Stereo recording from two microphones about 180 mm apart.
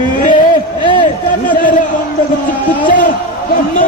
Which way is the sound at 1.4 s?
45° left (ahead or behind).